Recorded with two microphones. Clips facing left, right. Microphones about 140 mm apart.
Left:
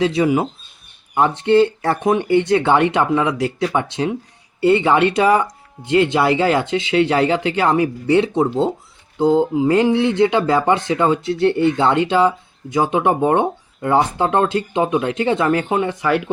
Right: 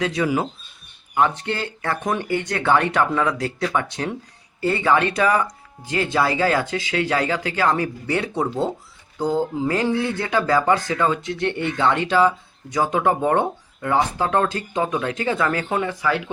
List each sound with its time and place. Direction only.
0.0 s speech: 25° left (ahead or behind)